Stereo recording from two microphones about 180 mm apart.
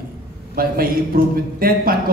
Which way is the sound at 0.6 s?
55° right (ahead or behind).